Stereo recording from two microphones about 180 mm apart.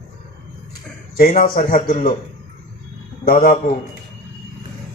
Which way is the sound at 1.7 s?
45° left (ahead or behind).